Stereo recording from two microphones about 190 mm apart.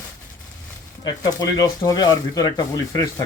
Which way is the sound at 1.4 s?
20° left (ahead or behind).